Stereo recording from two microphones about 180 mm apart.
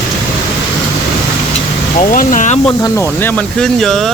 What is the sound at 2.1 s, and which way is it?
Speech, 50° left (ahead or behind).